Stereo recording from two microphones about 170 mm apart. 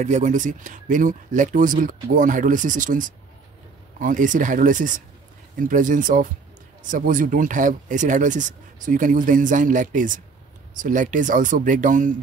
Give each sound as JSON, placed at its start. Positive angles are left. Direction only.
{"t": 0.0, "sound": "speech", "side_deg": -45}